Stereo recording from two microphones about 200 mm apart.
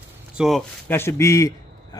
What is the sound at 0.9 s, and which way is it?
A man's voice, 10° left (ahead or behind).